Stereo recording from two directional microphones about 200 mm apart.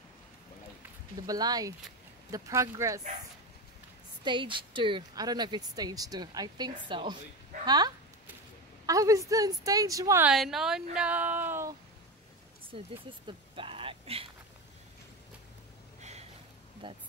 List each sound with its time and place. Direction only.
1.2 s a woman's voice: 20° right (ahead or behind)
4.2 s a woman's voice: 25° right (ahead or behind)
10.3 s a woman's voice: centre (ahead or behind)
12.7 s a woman's voice: 25° right (ahead or behind)
13.3 s a sound: 25° right (ahead or behind)
16.0 s a sound: 35° right (ahead or behind)
16.8 s a woman's voice: 25° right (ahead or behind)